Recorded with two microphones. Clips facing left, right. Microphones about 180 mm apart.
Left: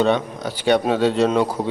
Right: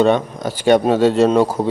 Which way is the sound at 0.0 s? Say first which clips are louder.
Right 4 dB; 45° right (ahead or behind).